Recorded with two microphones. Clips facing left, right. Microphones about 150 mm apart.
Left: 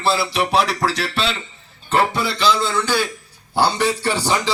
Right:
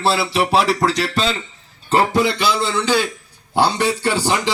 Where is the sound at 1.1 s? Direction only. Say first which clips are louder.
Right 3 dB; 40° right (ahead or behind).